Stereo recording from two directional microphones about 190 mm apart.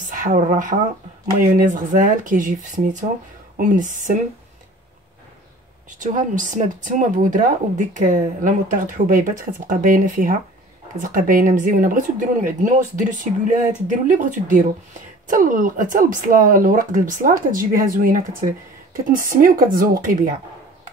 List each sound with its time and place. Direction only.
0.1 s speech: 45° right (ahead or behind)
5.9 s speech: 40° right (ahead or behind)